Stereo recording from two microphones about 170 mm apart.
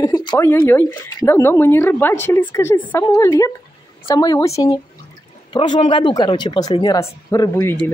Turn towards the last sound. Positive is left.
turn(degrees=15)  # may be behind; listen again after turning